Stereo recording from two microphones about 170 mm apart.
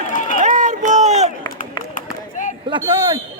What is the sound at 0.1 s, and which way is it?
Run, 50° left (ahead or behind).